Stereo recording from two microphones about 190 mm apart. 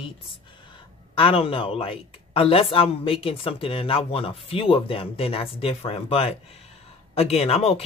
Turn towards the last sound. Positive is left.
turn(degrees=30)  # may be behind; listen again after turning